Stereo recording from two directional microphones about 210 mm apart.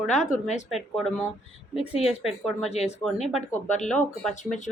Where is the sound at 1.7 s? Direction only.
30° left (ahead or behind).